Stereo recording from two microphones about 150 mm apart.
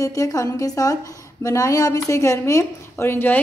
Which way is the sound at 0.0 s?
20° left (ahead or behind).